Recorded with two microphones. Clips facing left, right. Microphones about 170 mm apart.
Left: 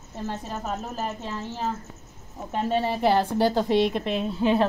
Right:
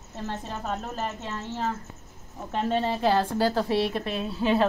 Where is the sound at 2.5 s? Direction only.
10° left (ahead or behind).